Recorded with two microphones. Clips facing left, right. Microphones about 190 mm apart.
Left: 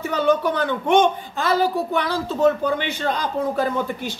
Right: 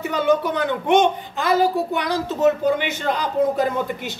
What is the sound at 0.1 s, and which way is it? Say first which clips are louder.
A woman's voice: even; 20° right (ahead or behind).